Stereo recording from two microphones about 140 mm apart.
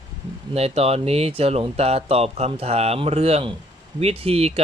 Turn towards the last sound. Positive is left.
turn(degrees=-45)  # may be behind; listen again after turning